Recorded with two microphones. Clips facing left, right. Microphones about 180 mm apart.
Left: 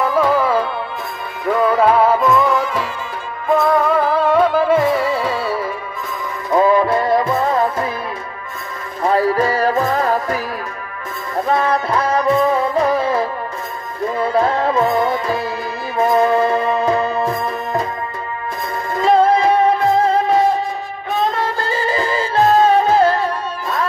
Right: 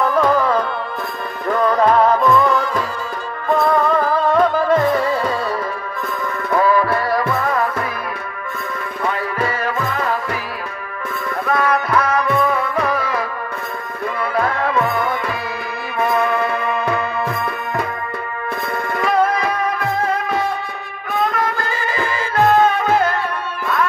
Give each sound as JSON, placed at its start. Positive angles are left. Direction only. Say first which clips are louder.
{"t": 0.0, "sound": "music", "louder": "even", "side_deg": 5}
{"t": 6.5, "sound": "music", "louder": "left 3 dB", "side_deg": 20}
{"t": 9.0, "sound": "music", "louder": "left 7 dB", "side_deg": 35}
{"t": 11.4, "sound": "music", "louder": "left 1 dB", "side_deg": 30}
{"t": 18.9, "sound": "music", "louder": "left 5 dB", "side_deg": 30}